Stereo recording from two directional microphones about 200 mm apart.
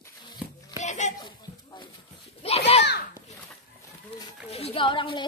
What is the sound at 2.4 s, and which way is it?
Children playing, 30° left (ahead or behind).